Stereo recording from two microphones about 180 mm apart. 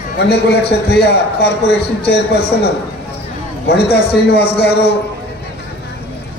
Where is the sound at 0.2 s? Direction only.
65° left (ahead or behind).